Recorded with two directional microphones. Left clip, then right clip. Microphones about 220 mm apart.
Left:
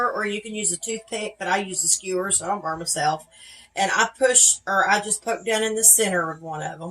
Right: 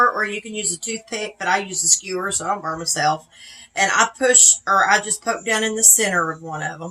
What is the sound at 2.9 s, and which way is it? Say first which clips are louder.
A woman's voice: right 4 dB; 30° right (ahead or behind).